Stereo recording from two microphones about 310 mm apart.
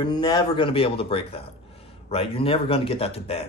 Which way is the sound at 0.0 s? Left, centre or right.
Centre.